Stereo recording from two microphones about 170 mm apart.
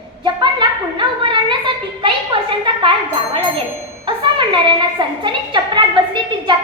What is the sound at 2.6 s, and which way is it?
Chime, 30° right (ahead or behind).